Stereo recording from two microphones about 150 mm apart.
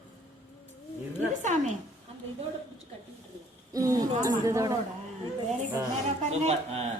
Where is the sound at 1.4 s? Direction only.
55° right (ahead or behind).